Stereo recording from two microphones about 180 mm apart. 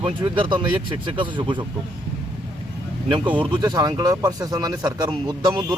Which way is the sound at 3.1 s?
25° right (ahead or behind).